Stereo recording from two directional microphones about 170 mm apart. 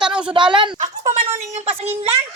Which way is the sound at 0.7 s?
40° right (ahead or behind).